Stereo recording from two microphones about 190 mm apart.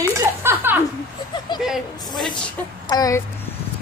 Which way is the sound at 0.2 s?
10° right (ahead or behind).